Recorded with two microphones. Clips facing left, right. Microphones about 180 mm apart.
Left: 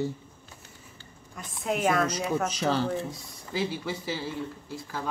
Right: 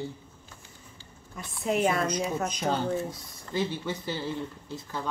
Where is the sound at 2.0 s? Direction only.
85° left.